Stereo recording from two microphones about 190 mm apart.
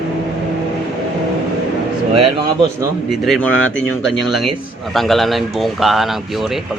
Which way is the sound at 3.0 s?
Centre (ahead or behind).